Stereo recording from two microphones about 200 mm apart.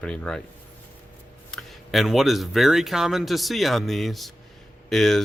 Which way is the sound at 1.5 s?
Centre (ahead or behind).